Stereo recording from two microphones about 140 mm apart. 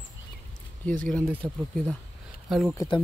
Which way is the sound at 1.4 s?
5° left (ahead or behind).